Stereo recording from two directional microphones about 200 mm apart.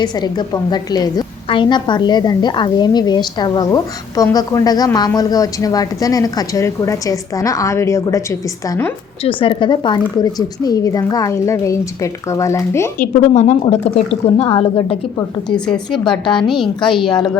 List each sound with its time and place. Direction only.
0.0 s a woman's voice: 20° left (ahead or behind)
13.0 s speech: 35° left (ahead or behind)
15.4 s a woman's voice: 5° left (ahead or behind)
16.0 s a woman's voice: 25° left (ahead or behind)
16.4 s a woman's voice: centre (ahead or behind)